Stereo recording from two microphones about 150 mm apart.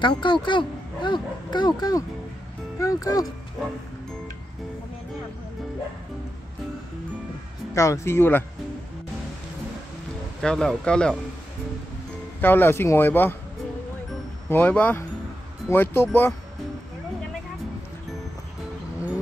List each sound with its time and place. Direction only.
0.0 s speech: 35° left (ahead or behind)
7.7 s speech: 20° left (ahead or behind)
10.4 s speech: 5° left (ahead or behind)
12.4 s speech: 15° left (ahead or behind)
14.5 s speech: 10° left (ahead or behind)